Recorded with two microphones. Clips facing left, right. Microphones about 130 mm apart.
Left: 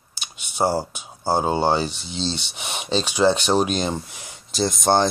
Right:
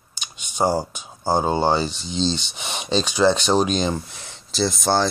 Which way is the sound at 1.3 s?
10° left (ahead or behind).